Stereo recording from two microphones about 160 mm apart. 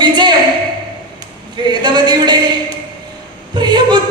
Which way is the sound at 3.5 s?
30° right (ahead or behind).